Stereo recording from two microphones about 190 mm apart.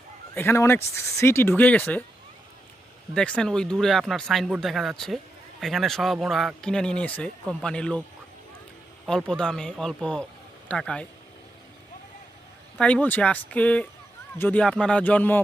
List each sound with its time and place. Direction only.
0.3 s speech: 10° left (ahead or behind)
3.2 s speech: 5° left (ahead or behind)
9.0 s speech: 5° left (ahead or behind)
12.7 s speech: 5° left (ahead or behind)